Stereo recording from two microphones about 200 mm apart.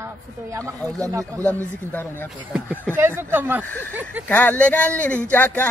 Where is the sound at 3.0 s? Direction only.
10° right (ahead or behind).